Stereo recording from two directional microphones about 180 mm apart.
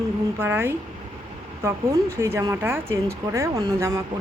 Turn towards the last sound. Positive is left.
turn(degrees=-20)  # may be behind; listen again after turning